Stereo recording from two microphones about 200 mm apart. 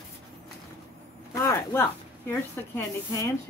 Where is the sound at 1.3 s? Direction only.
15° left (ahead or behind).